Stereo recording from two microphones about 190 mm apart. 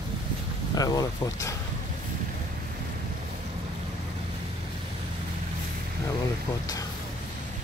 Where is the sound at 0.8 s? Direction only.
20° left (ahead or behind).